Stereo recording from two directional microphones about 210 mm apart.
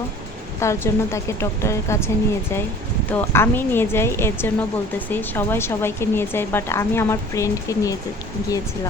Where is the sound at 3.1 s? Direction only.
10° left (ahead or behind).